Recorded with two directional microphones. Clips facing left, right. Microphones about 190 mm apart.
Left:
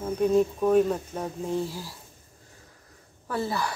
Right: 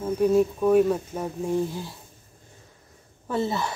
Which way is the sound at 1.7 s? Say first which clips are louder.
Right 4 dB; 20° right (ahead or behind).